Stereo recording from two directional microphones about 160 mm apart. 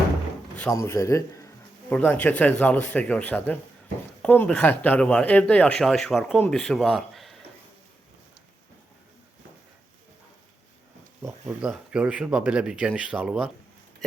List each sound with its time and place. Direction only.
0.7 s a man's voice: 20° left (ahead or behind); by 7.3 s centre (ahead or behind)
11.2 s a sound: 15° right (ahead or behind)
11.6 s speech: 5° right (ahead or behind)